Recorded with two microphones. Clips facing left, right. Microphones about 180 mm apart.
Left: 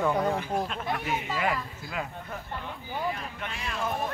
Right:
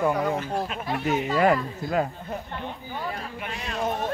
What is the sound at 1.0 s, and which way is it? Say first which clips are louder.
Speech: right 12 dB; 40° right (ahead or behind).